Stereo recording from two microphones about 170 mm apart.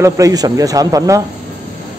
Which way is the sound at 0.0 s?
20° right (ahead or behind).